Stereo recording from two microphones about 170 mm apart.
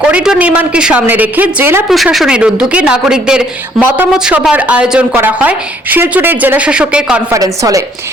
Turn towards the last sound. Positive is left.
turn(degrees=-20)  # may be behind; listen again after turning